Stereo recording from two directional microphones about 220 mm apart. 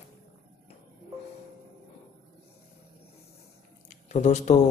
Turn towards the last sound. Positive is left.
turn(degrees=30)  # may be behind; listen again after turning